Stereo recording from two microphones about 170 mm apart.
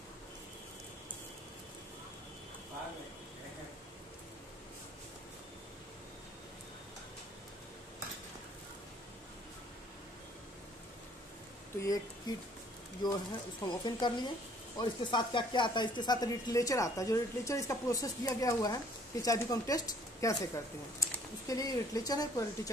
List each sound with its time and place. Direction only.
11.8 s speech: 20° left (ahead or behind)